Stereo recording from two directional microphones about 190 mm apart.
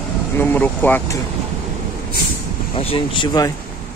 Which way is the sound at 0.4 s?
10° left (ahead or behind).